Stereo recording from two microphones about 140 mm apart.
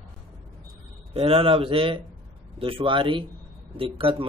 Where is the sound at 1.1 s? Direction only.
45° right (ahead or behind).